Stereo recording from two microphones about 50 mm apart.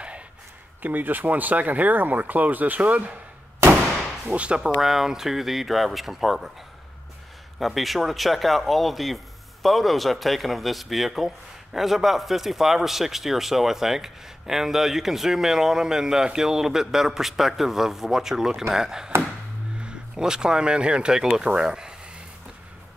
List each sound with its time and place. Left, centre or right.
0.8 s speech: right
4.3 s speech: right
4.8 s speech: centre
7.5 s speech: centre